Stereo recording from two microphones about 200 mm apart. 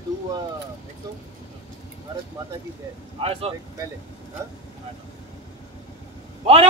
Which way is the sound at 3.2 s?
30° right (ahead or behind).